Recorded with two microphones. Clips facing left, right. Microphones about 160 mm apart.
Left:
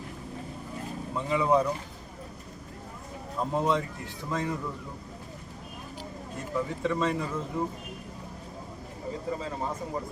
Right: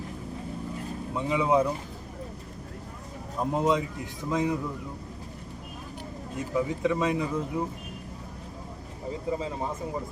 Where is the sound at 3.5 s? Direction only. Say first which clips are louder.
Right 2 dB; 15° right (ahead or behind).